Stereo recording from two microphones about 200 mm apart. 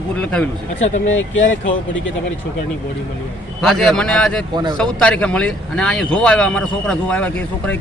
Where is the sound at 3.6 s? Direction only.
5° left (ahead or behind).